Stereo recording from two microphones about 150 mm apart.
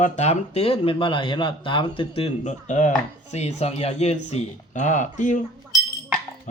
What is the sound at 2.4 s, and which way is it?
A man's voice, 55° left (ahead or behind).